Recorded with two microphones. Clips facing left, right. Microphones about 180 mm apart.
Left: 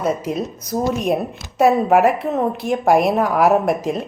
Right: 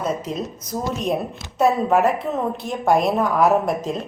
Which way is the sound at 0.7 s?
35° left (ahead or behind).